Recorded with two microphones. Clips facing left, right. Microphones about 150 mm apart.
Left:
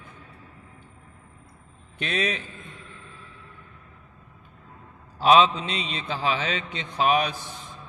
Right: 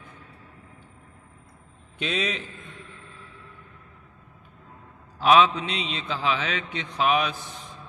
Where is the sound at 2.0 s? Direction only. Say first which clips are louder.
Left 1 dB; 55° left (ahead or behind).